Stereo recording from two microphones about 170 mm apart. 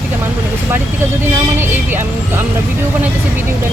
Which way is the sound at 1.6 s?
15° right (ahead or behind).